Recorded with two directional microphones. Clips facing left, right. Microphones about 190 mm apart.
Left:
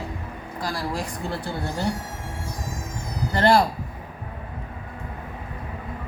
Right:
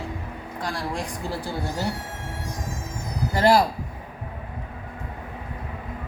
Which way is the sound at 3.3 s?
5° right (ahead or behind).